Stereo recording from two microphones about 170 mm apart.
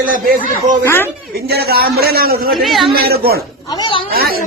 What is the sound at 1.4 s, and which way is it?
A man's voice, 70° right (ahead or behind).